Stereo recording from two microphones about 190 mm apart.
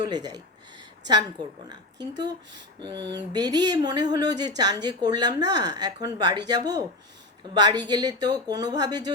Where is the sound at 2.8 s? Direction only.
20° right (ahead or behind).